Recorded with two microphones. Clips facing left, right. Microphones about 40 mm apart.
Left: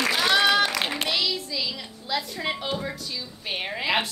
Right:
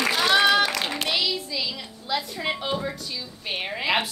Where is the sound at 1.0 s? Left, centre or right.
Centre.